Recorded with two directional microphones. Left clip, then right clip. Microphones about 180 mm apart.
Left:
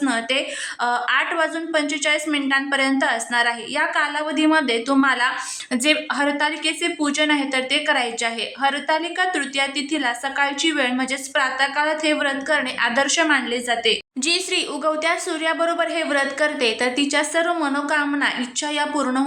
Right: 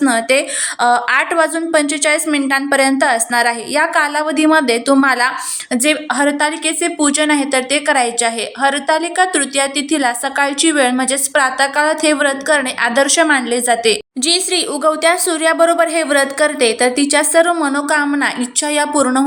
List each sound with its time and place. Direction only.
0.0 s a woman's voice: 25° right (ahead or behind)